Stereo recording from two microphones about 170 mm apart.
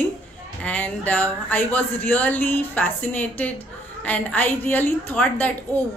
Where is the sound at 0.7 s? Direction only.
10° left (ahead or behind).